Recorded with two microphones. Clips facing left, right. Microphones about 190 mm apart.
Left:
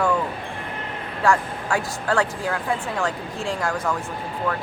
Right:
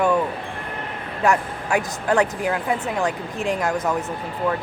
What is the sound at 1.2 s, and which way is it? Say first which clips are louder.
Speech: right 1 dB; 20° right (ahead or behind).